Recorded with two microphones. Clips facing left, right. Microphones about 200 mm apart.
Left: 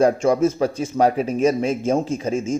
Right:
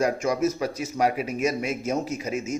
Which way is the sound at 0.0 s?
30° left (ahead or behind).